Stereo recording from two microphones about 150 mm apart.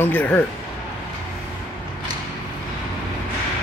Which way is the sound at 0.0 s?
10° left (ahead or behind).